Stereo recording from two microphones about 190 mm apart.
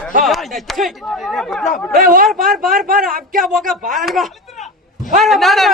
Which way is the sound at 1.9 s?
45° right (ahead or behind).